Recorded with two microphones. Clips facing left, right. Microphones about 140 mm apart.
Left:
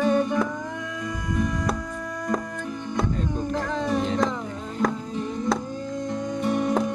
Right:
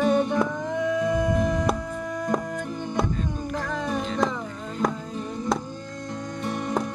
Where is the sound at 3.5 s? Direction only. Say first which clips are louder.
Left 3 dB; 5° right (ahead or behind).